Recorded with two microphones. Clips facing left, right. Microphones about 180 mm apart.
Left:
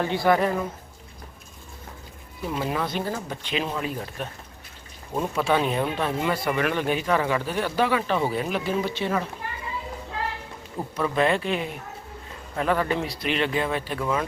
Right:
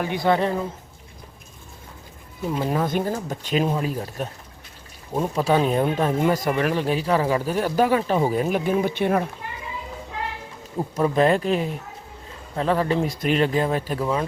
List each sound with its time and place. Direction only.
0.0 s a woman's voice: 20° right (ahead or behind)
2.6 s speech: 45° right (ahead or behind)
5.3 s speech: 35° right (ahead or behind); by 9.2 s 55° right (ahead or behind)
10.9 s speech: 40° right (ahead or behind)
13.1 s speech: 40° right (ahead or behind)